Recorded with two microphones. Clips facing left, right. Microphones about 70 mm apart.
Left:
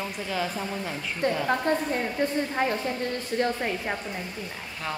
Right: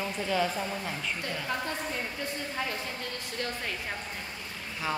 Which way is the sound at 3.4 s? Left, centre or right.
Left.